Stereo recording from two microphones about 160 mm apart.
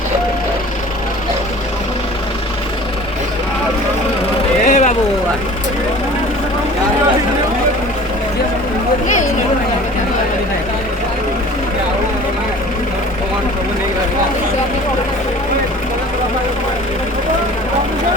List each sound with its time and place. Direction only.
4.6 s vehicle: 45° left (ahead or behind)